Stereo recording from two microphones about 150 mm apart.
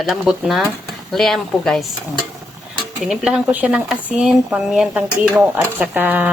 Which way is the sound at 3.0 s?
5° right (ahead or behind).